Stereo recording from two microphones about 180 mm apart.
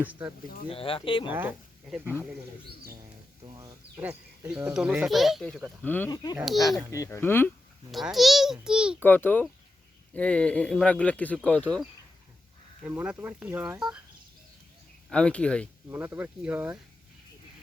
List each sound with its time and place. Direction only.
0.7 s speech: 30° left (ahead or behind)
1.3 s speech: 10° right (ahead or behind)
4.4 s speech: 5° right (ahead or behind); by 6.1 s 10° left (ahead or behind)
6.3 s speech: centre (ahead or behind)
6.9 s speech: 15° left (ahead or behind)
7.9 s speech: centre (ahead or behind)
9.0 s speech: 10° left (ahead or behind)
12.8 s speech: 10° right (ahead or behind)
15.1 s speech: 5° left (ahead or behind)
15.9 s speech: 10° right (ahead or behind)